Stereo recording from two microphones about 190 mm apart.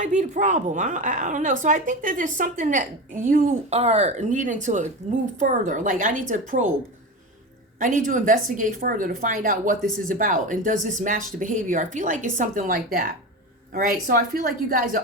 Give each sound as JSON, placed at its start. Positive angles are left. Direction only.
{"t": 0.0, "sound": "a woman's voice", "side_deg": -40}
{"t": 7.8, "sound": "speech", "side_deg": -45}